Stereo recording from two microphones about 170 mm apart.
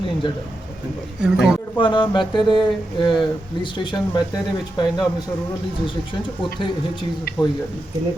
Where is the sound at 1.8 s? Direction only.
30° left (ahead or behind).